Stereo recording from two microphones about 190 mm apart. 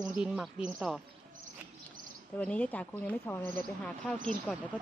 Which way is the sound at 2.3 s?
5° left (ahead or behind).